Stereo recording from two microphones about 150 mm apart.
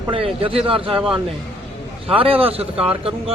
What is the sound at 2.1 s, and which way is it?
Speech, 35° right (ahead or behind).